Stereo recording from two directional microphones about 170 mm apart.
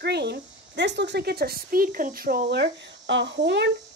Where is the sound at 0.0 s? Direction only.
75° right (ahead or behind).